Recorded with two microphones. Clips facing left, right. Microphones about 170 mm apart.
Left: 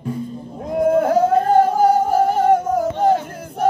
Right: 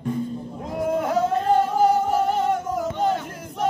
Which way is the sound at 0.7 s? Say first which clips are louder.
Left 8 dB; 55° left (ahead or behind).